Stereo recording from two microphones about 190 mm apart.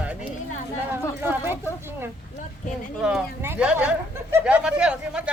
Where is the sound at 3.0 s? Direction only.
5° right (ahead or behind).